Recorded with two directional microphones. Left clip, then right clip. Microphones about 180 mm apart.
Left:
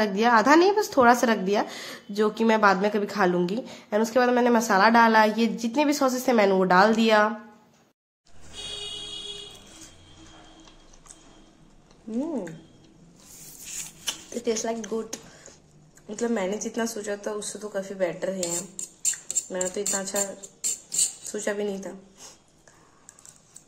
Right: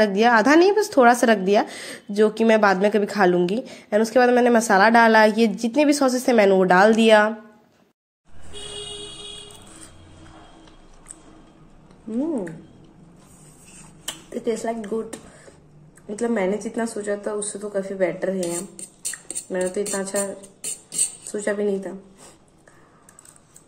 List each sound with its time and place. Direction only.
0.0 s a woman's voice: 15° right (ahead or behind)
14.0 s speech: centre (ahead or behind)
21.3 s speech: centre (ahead or behind)